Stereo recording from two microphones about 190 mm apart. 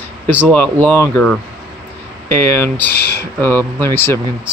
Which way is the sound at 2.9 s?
55° left (ahead or behind).